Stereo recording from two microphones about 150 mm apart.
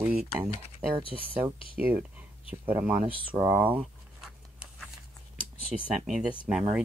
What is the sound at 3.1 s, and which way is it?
Speech, 35° right (ahead or behind).